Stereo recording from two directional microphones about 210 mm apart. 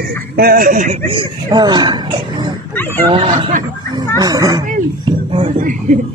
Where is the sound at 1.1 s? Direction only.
20° right (ahead or behind).